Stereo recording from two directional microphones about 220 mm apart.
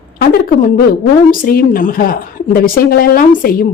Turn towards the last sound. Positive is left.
turn(degrees=40)  # may be behind; listen again after turning